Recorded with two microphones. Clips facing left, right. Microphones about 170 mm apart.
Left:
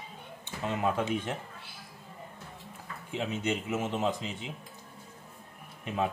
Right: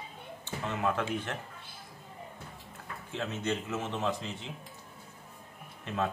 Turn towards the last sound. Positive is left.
turn(degrees=15)  # may be behind; listen again after turning